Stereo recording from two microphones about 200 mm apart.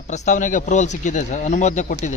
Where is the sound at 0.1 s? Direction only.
35° left (ahead or behind).